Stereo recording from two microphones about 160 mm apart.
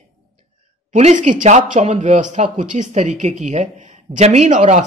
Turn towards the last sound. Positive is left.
turn(degrees=-50)  # may be behind; listen again after turning